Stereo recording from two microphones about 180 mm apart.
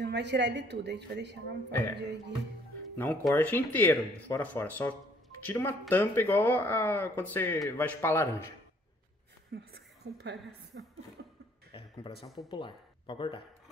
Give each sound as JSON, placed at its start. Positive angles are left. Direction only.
{"t": 0.0, "sound": "a woman's voice", "side_deg": -70}
{"t": 1.7, "sound": "speech", "side_deg": 10}
{"t": 3.0, "sound": "speech", "side_deg": 10}
{"t": 9.5, "sound": "a woman's voice", "side_deg": -65}
{"t": 11.2, "sound": "cough", "side_deg": -80}
{"t": 12.4, "sound": "speech", "side_deg": 25}